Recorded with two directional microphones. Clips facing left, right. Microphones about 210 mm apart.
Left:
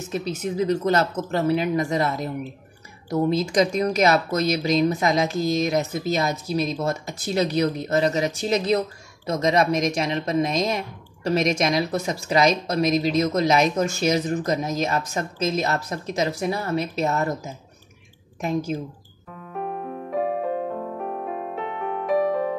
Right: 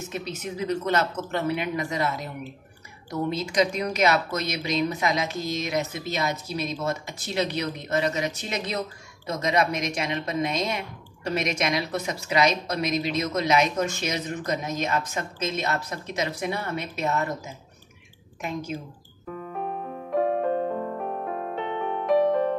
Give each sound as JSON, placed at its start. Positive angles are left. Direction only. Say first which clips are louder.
{"t": 0.1, "sound": "speech", "louder": "left 9 dB", "side_deg": 35}
{"t": 3.3, "sound": "speech", "louder": "left 4 dB", "side_deg": 35}
{"t": 19.6, "sound": "piano", "louder": "left 5 dB", "side_deg": 0}